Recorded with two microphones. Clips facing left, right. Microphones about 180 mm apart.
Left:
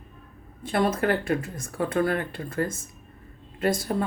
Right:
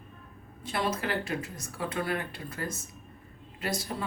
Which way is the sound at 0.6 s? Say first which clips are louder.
Left 7 dB; 50° left (ahead or behind).